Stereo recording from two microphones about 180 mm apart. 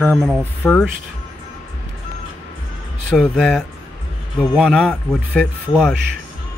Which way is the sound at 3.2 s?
Centre (ahead or behind).